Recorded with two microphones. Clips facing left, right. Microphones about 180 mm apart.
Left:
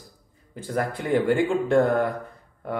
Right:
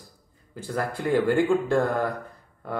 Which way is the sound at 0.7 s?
20° left (ahead or behind).